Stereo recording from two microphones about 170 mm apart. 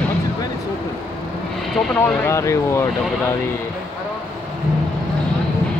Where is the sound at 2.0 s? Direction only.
15° left (ahead or behind).